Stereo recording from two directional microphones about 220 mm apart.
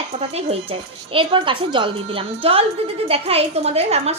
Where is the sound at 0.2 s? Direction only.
25° right (ahead or behind).